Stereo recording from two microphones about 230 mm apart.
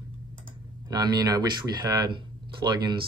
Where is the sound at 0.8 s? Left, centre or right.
Centre.